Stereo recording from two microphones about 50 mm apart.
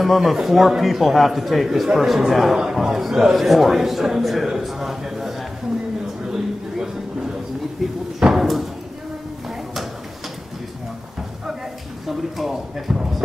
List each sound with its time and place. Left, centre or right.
0.0 s a man's voice: centre
7.8 s a man's voice: centre
8.2 s slam: centre
12.1 s a man's voice: centre